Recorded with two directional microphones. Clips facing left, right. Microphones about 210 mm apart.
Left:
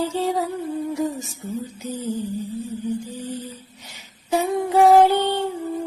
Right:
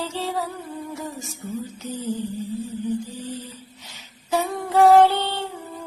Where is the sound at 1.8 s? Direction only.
10° left (ahead or behind).